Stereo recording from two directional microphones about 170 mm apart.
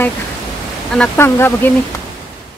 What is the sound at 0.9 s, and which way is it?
Speech, 10° left (ahead or behind).